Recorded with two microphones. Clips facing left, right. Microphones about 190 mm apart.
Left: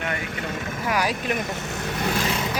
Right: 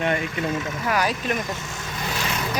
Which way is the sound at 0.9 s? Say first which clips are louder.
Even; 10° left (ahead or behind).